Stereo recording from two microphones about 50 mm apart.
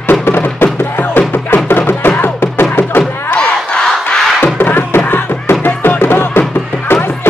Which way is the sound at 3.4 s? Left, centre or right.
Centre.